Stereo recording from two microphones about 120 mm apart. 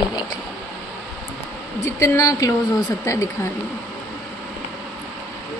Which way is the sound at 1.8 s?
25° left (ahead or behind).